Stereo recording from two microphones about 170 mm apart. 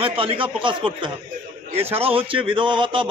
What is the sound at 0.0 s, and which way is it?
Speech, 30° right (ahead or behind).